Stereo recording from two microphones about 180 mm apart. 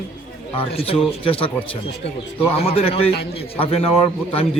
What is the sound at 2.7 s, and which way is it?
Speech, 30° left (ahead or behind).